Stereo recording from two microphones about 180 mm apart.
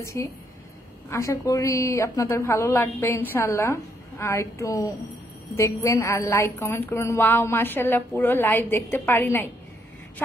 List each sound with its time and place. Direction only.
0.0 s a woman's voice: 15° left (ahead or behind)